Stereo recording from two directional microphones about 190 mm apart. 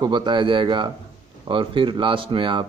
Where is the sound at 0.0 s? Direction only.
25° right (ahead or behind).